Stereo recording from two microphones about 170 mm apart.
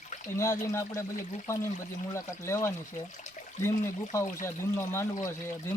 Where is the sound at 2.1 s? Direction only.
15° left (ahead or behind).